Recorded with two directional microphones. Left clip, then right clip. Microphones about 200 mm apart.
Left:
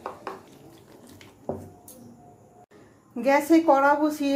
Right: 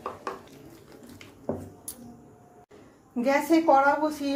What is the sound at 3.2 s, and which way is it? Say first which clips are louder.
A woman's voice: left 3 dB; 15° left (ahead or behind).